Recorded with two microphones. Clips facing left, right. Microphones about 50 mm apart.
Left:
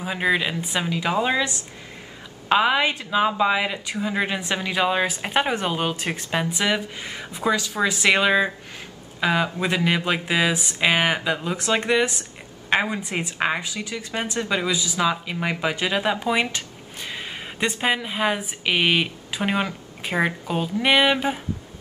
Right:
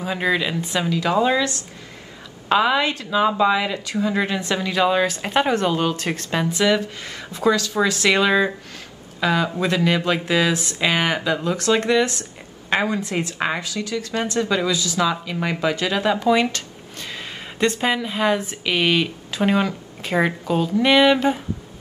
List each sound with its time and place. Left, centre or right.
0.0 s a woman's voice: centre